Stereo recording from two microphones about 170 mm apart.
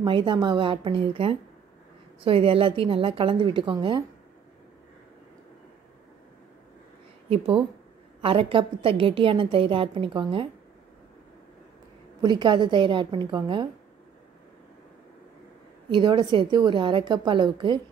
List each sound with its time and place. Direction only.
0.0 s a woman's voice: 30° right (ahead or behind)
8.2 s a woman's voice: 30° right (ahead or behind)
12.2 s a woman's voice: 25° right (ahead or behind)
15.9 s a woman's voice: 30° right (ahead or behind)